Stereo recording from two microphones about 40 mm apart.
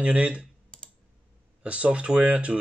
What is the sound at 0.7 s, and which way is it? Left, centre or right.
Computer keyboard, left.